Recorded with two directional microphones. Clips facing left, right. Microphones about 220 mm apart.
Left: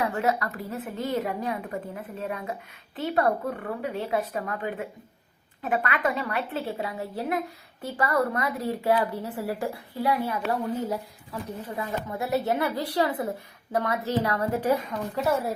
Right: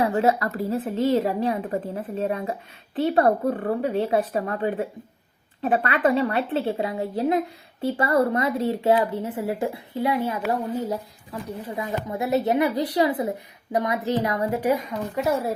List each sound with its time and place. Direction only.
0.0 s a woman's voice: 30° right (ahead or behind); by 15.2 s 15° right (ahead or behind)